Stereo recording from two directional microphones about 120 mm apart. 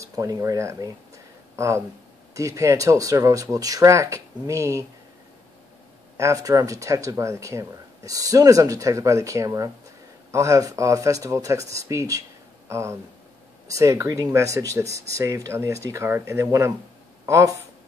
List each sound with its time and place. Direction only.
0.0 s speech: 30° right (ahead or behind)
6.1 s speech: 25° right (ahead or behind)